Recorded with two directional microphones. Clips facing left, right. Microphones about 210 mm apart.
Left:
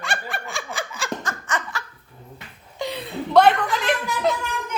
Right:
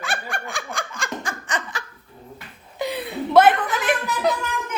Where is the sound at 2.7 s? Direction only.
5° right (ahead or behind).